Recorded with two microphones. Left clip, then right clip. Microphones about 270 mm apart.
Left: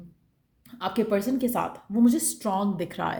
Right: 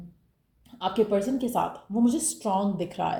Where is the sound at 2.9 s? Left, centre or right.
Left.